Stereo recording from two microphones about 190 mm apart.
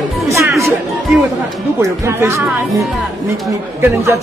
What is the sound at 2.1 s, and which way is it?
Speech, 15° right (ahead or behind).